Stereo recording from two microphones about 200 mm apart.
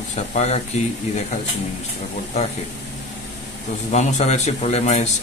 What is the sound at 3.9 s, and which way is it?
Speech, 35° left (ahead or behind).